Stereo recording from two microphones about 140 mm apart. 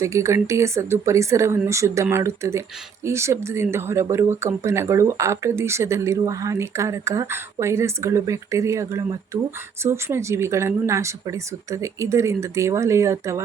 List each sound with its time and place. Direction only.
0.0 s speech: 20° right (ahead or behind)